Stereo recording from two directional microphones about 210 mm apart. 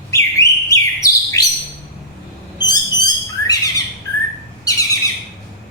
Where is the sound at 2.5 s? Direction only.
20° left (ahead or behind).